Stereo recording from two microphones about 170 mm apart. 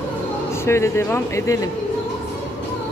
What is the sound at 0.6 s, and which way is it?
Speech, 15° left (ahead or behind).